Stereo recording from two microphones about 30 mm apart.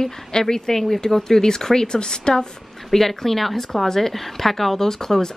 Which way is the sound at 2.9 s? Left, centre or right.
Centre.